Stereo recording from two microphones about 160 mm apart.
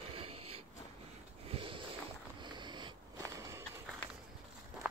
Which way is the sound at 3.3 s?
20° right (ahead or behind).